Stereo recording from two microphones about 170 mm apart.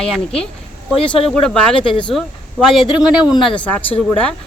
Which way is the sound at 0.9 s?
35° left (ahead or behind).